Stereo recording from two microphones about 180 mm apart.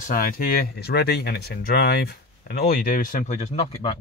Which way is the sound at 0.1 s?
50° left (ahead or behind).